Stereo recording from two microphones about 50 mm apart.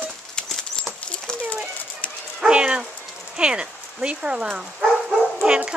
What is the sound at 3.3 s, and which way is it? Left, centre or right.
Speech, centre.